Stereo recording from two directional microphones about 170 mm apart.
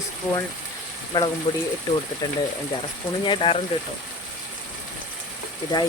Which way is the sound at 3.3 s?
30° left (ahead or behind).